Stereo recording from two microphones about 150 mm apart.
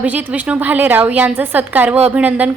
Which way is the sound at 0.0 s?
10° right (ahead or behind).